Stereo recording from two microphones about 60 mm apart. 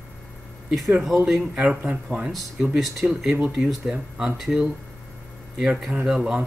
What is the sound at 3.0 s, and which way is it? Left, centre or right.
Speech, right.